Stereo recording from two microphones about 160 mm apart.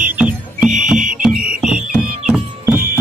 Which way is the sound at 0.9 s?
55° right (ahead or behind).